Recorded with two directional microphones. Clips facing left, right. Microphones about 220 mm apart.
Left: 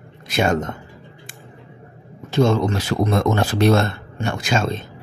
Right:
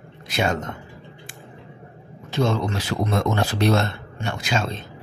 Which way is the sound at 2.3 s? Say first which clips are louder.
Left 5 dB; 45° left (ahead or behind).